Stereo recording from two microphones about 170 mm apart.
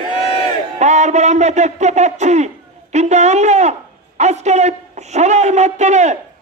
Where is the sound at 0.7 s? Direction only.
40° right (ahead or behind).